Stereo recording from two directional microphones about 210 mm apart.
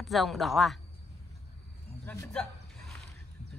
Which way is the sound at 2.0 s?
5° left (ahead or behind).